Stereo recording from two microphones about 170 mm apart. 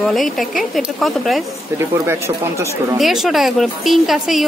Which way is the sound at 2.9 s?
Centre (ahead or behind).